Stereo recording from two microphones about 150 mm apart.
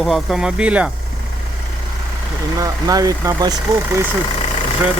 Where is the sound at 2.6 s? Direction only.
25° right (ahead or behind).